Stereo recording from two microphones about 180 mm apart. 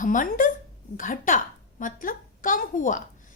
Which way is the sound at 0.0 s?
45° left (ahead or behind).